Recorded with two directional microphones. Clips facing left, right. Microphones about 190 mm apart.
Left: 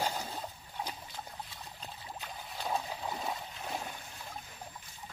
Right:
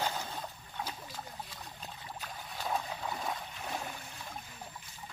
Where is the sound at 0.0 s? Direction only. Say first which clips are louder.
Left 1 dB; 10° left (ahead or behind).